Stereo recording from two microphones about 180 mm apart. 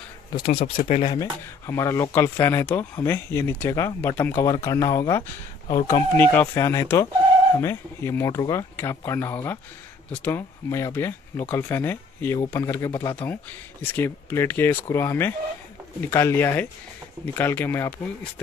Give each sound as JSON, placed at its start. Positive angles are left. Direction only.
{"t": 0.3, "sound": "speech", "side_deg": 30}
{"t": 1.7, "sound": "speech", "side_deg": 15}